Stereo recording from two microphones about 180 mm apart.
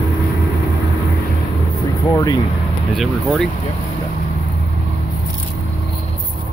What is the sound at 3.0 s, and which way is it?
Speech, centre (ahead or behind).